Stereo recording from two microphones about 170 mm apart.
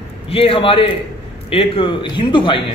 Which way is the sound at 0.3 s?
35° left (ahead or behind).